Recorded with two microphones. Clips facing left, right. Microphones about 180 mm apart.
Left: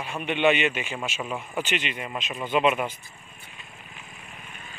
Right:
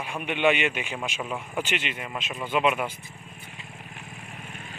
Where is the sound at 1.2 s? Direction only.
Centre (ahead or behind).